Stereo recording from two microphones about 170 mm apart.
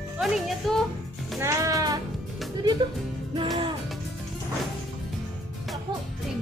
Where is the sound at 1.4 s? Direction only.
20° right (ahead or behind).